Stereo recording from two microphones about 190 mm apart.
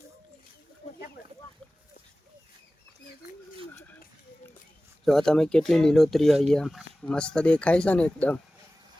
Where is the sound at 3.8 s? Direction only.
10° left (ahead or behind).